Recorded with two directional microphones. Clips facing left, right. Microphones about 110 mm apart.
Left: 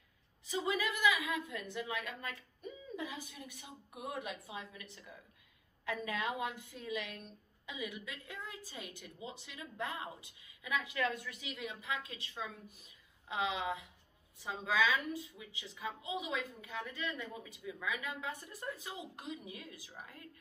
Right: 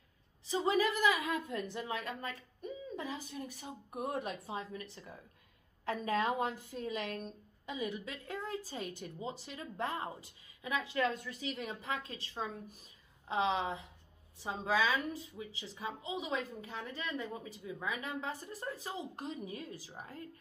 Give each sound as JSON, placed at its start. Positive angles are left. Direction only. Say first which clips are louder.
{"t": 0.5, "sound": "a woman's voice", "louder": "right 5 dB", "side_deg": -35}